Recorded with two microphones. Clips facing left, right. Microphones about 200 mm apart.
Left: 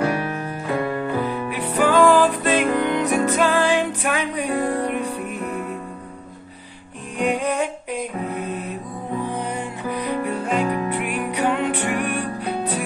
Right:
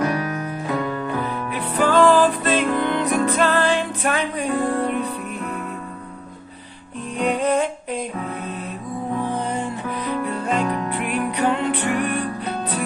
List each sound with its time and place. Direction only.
0.0 s piano: 30° left (ahead or behind)
1.2 s music: 10° left (ahead or behind)
7.2 s music: 10° left (ahead or behind)
9.5 s music: 10° left (ahead or behind)